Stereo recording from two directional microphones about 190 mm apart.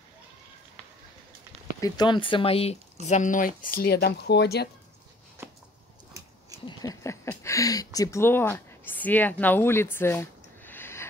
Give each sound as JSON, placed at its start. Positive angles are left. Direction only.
{"t": 1.8, "sound": "speech", "side_deg": 25}
{"t": 5.4, "sound": "a sound", "side_deg": -15}
{"t": 6.8, "sound": "speech", "side_deg": 15}